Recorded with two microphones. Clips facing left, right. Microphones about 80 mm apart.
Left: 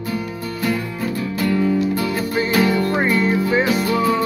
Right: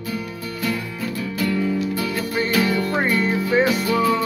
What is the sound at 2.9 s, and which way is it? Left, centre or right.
Music, centre.